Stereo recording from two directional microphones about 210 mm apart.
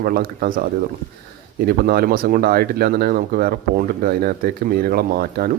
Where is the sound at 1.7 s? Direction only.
45° right (ahead or behind).